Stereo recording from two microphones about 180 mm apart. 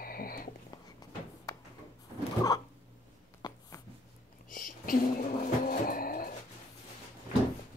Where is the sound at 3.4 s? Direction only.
20° left (ahead or behind).